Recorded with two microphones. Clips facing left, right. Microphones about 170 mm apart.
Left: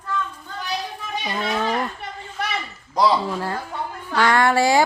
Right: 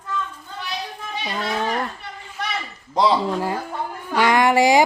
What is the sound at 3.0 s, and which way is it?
Speech, 15° right (ahead or behind).